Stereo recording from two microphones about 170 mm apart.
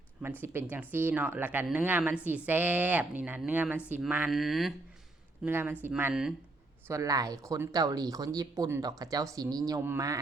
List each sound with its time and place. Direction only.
0.4 s a woman's voice: 10° right (ahead or behind)
6.8 s speech: 20° right (ahead or behind)